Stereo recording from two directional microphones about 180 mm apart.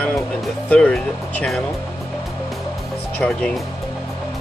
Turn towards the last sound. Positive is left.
turn(degrees=5)  # may be behind; listen again after turning